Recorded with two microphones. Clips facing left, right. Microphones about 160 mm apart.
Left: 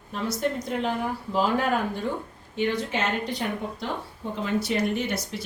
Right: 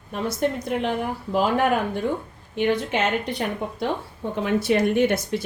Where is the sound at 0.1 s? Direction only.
60° right (ahead or behind).